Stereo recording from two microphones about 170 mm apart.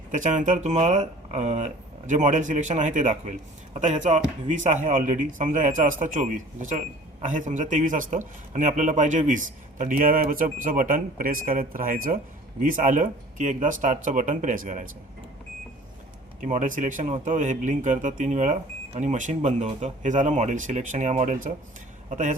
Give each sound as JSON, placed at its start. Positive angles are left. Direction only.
{"t": 0.1, "sound": "speech", "side_deg": -45}
{"t": 16.4, "sound": "speech", "side_deg": -50}